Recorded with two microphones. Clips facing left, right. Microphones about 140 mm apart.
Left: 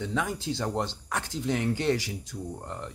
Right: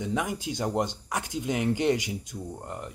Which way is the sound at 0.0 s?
15° right (ahead or behind).